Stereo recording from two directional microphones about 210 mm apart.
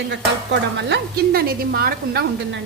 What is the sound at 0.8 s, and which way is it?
Speech, 55° right (ahead or behind).